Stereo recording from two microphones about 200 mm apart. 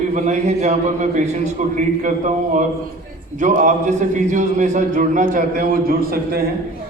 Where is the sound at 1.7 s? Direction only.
40° right (ahead or behind).